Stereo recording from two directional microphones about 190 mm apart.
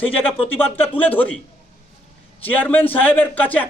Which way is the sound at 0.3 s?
30° left (ahead or behind).